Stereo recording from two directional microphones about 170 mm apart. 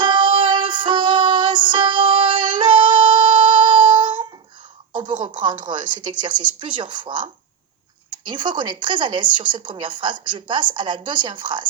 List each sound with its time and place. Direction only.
0.0 s music: 30° right (ahead or behind)
4.9 s a sound: 30° right (ahead or behind)
5.5 s a woman's voice: 30° right (ahead or behind)
8.3 s a woman's voice: 30° right (ahead or behind)